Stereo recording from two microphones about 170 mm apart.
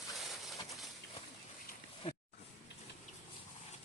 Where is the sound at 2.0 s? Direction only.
30° left (ahead or behind).